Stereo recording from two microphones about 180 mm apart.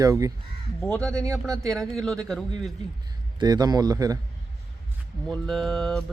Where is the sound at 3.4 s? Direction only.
20° right (ahead or behind).